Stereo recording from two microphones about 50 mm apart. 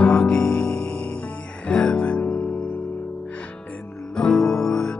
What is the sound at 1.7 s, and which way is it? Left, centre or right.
Music, centre.